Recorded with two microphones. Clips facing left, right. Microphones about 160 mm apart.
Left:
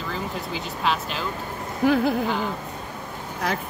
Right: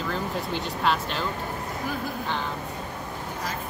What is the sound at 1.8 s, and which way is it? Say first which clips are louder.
Speech: left 14 dB; 80° left.